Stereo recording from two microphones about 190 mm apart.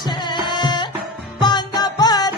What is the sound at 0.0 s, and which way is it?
Music, 20° left (ahead or behind).